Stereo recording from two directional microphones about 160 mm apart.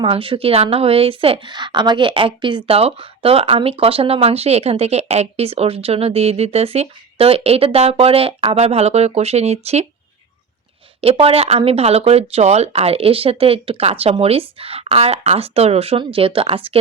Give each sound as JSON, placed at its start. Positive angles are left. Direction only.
{"t": 0.0, "sound": "a woman's voice", "side_deg": -35}
{"t": 11.0, "sound": "a woman's voice", "side_deg": -40}